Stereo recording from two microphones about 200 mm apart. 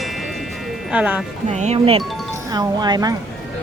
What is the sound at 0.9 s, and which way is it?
Speech, 5° right (ahead or behind).